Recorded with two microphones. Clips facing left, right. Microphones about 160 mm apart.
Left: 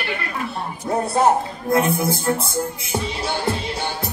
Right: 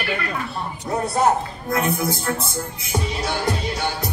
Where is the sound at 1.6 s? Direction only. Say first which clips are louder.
Left 3 dB; 25° left (ahead or behind).